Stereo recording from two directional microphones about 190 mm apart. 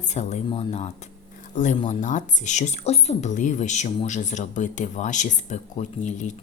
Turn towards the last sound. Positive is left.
turn(degrees=40)  # may be behind; listen again after turning